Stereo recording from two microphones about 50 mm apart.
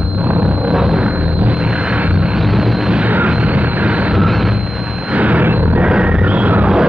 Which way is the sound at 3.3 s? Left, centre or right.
Right.